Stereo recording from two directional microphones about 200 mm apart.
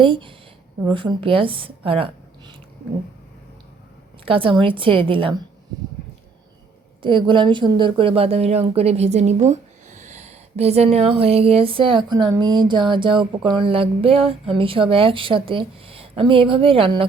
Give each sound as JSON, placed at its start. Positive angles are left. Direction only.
{"t": 0.0, "sound": "speech", "side_deg": -25}
{"t": 4.3, "sound": "speech", "side_deg": -25}
{"t": 7.0, "sound": "speech", "side_deg": -25}